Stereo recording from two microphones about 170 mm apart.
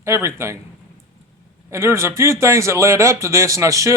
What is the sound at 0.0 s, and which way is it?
Speech, 15° right (ahead or behind).